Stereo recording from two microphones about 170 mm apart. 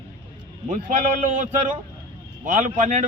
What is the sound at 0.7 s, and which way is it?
A man's voice, 50° right (ahead or behind).